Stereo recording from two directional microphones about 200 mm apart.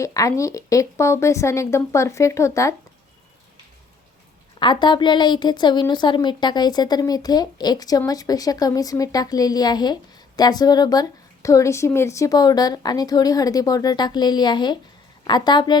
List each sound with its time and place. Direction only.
0.0 s speech: 15° left (ahead or behind)
4.6 s a woman's voice: 25° left (ahead or behind)